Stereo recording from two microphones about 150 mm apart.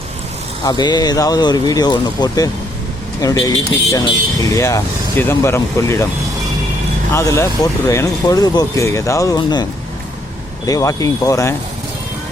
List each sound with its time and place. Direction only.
0.6 s speech: 30° left (ahead or behind)
7.1 s speech: 20° left (ahead or behind)
10.7 s speech: 20° left (ahead or behind)